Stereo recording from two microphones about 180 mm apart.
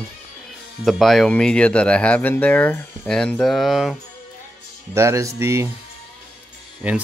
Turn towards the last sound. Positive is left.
turn(degrees=-5)  # may be behind; listen again after turning